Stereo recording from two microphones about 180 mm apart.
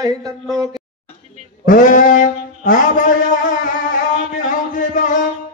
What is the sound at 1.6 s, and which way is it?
Brass instrument, 45° left (ahead or behind).